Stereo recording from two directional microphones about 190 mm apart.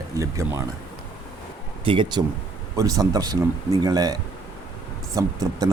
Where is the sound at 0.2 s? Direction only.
15° right (ahead or behind).